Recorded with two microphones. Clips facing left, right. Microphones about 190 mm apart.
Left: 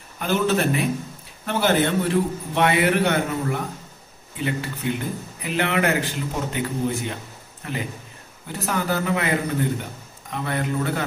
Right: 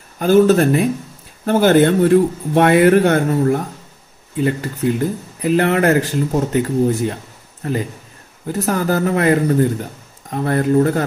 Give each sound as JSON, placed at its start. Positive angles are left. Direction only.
{"t": 0.2, "sound": "a man's voice", "side_deg": -40}